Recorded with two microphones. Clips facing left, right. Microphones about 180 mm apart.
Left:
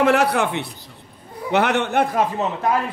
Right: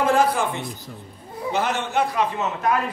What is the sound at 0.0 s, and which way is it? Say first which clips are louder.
A man's voice: left 2 dB; 70° left (ahead or behind).